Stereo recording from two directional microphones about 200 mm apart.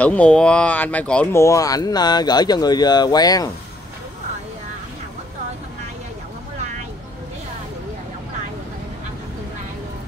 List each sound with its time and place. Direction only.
0.0 s speech: 5° left (ahead or behind)